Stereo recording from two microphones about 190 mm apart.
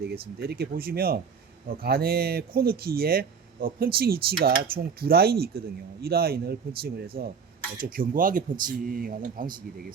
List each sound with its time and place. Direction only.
0.0 s speech: 55° right (ahead or behind)